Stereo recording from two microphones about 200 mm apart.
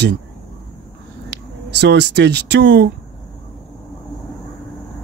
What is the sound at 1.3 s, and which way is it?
Speech, 55° right (ahead or behind).